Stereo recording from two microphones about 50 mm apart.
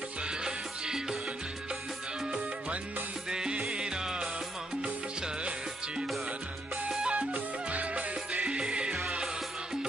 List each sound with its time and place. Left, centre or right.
0.4 s music: centre
3.3 s music: centre
6.9 s music: centre
7.2 s music: right; by 9.3 s centre